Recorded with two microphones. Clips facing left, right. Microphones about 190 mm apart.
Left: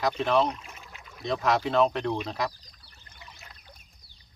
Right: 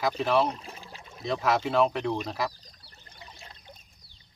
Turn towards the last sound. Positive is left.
turn(degrees=-30)  # may be behind; listen again after turning